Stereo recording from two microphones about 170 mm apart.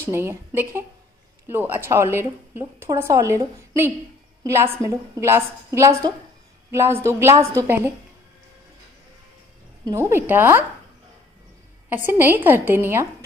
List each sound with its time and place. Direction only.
0.0 s a woman's voice: 15° right (ahead or behind)
9.8 s a woman's voice: 15° right (ahead or behind)
12.1 s a woman's voice: 10° right (ahead or behind)